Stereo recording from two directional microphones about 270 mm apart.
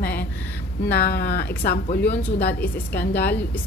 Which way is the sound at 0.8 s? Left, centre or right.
Left.